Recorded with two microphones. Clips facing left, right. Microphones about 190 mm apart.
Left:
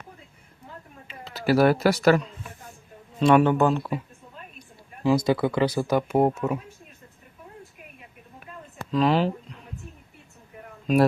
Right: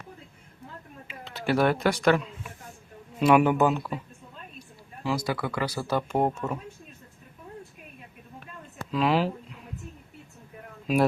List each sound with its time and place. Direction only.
1.0 s speech: centre (ahead or behind)
3.2 s speech: 10° right (ahead or behind)
5.0 s speech: 20° left (ahead or behind)
8.9 s speech: 5° right (ahead or behind)